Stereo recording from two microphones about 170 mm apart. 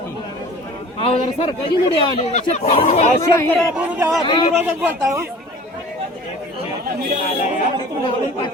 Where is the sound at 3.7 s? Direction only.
5° right (ahead or behind).